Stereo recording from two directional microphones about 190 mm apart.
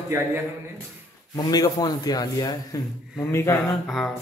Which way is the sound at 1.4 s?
20° left (ahead or behind).